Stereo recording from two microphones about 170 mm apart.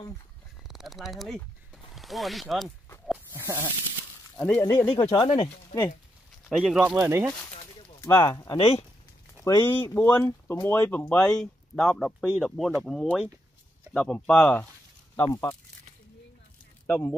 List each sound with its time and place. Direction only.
0.7 s speech: centre (ahead or behind)
3.1 s dog: 15° right (ahead or behind)
4.4 s speech: 10° left (ahead or behind)
5.1 s speech: 30° left (ahead or behind)
6.5 s speech: 5° right (ahead or behind)
7.0 s speech: 15° right (ahead or behind)
8.0 s speech: 15° left (ahead or behind)
8.5 s speech: 35° left (ahead or behind)
9.4 s speech: 20° left (ahead or behind)
16.8 s speech: 15° left (ahead or behind)